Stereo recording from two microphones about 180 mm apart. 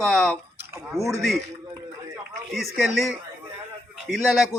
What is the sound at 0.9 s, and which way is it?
Speech, 15° left (ahead or behind).